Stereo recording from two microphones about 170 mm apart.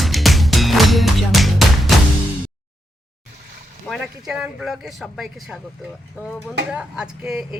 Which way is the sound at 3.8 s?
Centre (ahead or behind).